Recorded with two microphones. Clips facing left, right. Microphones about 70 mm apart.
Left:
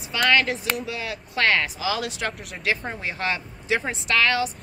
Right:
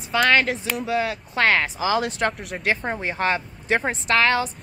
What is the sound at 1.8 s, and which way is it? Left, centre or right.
Speech, right.